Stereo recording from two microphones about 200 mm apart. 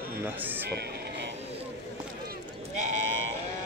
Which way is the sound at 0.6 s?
55° right (ahead or behind).